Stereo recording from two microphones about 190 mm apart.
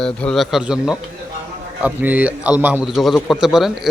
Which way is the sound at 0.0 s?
5° left (ahead or behind).